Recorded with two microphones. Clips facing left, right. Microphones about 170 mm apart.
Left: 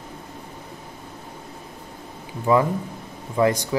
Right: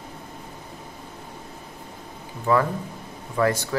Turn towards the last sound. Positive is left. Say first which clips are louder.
# left 2 dB
turn(degrees=20)  # may be behind; listen again after turning